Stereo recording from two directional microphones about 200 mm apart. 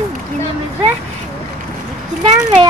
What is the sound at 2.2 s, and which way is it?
Speech, 25° right (ahead or behind).